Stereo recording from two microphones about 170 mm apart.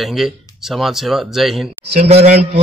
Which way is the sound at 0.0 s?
Centre (ahead or behind).